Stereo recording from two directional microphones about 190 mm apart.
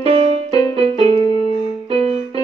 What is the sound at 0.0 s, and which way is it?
Music, 30° right (ahead or behind).